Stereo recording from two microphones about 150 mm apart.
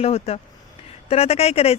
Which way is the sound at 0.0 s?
40° left (ahead or behind).